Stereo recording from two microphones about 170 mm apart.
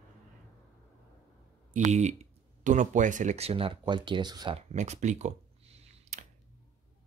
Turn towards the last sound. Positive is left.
turn(degrees=-40)  # may be behind; listen again after turning